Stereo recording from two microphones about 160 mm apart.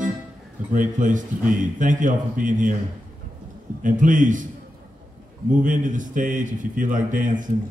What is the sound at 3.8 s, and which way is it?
Speech, 55° right (ahead or behind).